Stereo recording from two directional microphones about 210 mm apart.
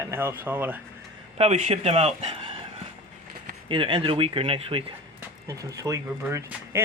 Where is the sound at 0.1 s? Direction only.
10° right (ahead or behind).